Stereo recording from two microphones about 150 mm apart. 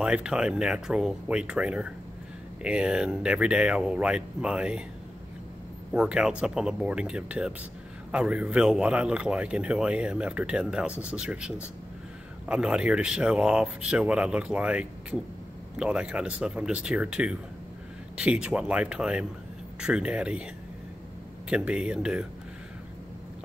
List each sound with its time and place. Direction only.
0.0 s speech: 5° right (ahead or behind)
5.9 s speech: 5° right (ahead or behind)
21.5 s speech: 5° right (ahead or behind)